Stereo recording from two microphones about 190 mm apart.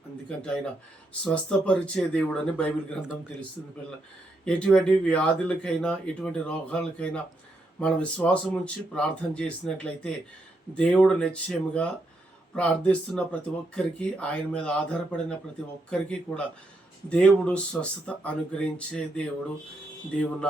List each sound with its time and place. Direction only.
0.3 s speech: 5° left (ahead or behind)
4.4 s speech: 5° left (ahead or behind)